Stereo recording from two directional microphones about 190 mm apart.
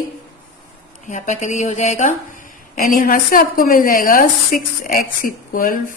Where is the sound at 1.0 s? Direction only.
40° left (ahead or behind).